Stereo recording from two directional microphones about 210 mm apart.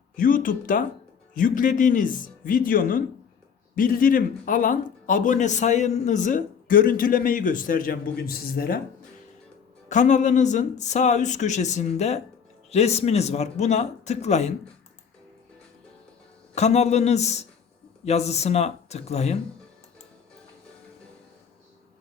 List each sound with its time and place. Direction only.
0.2 s speech: 40° left (ahead or behind)
9.9 s speech: 35° left (ahead or behind)
16.6 s speech: 30° left (ahead or behind)